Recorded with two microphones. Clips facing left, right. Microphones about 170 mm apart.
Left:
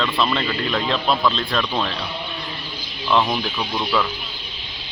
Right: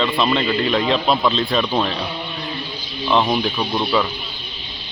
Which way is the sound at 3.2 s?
20° right (ahead or behind).